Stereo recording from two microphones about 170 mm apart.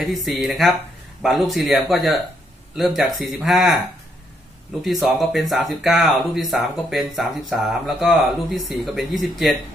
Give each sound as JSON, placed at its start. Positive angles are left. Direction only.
{"t": 0.0, "sound": "speech", "side_deg": 0}
{"t": 5.0, "sound": "speech", "side_deg": 0}